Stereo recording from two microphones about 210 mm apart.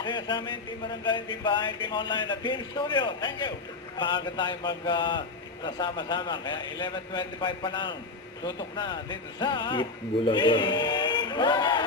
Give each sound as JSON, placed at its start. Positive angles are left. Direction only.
{"t": 0.0, "sound": "speech", "side_deg": 20}